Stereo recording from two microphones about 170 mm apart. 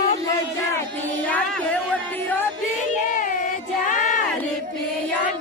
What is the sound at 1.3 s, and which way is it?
Music, 10° left (ahead or behind).